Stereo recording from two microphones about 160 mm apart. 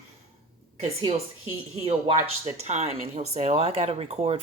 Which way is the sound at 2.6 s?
45° right (ahead or behind).